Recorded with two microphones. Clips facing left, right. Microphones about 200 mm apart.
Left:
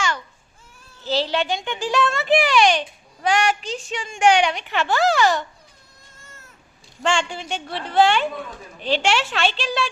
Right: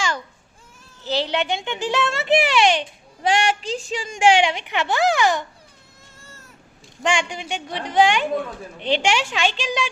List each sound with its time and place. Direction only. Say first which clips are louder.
1.0 s a child's voice: left 1 dB; 20° right (ahead or behind)
7.0 s a woman's voice: even; 15° right (ahead or behind)